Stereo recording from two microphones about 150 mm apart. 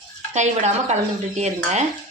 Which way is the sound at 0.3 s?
50° right (ahead or behind).